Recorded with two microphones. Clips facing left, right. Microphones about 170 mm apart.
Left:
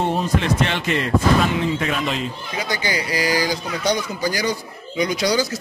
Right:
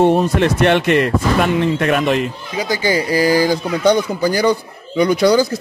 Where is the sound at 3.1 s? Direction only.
45° right (ahead or behind).